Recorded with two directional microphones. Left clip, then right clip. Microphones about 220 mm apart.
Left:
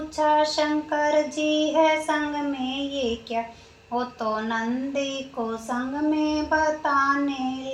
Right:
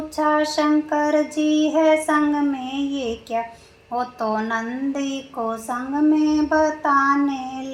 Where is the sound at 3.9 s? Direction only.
50° right (ahead or behind).